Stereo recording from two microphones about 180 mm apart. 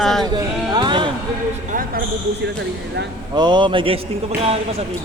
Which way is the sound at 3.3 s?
25° right (ahead or behind).